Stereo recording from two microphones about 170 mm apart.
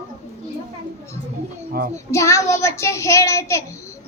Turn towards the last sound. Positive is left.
turn(degrees=15)  # may be behind; listen again after turning